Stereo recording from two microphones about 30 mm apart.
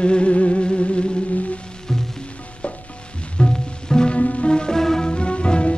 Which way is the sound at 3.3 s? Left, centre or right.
Left.